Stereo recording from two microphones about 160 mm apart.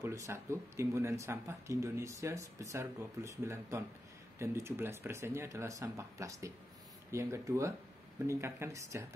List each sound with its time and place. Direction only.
0.0 s speech: 15° right (ahead or behind)